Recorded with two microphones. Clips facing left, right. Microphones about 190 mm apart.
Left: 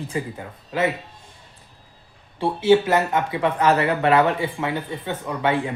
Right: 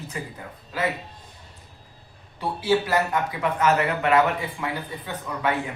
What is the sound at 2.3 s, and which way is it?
Speech, 25° left (ahead or behind).